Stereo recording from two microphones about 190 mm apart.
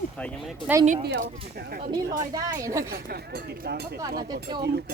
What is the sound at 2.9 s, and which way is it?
Speech, 55° right (ahead or behind).